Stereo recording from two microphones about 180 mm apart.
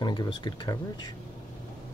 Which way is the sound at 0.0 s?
25° left (ahead or behind).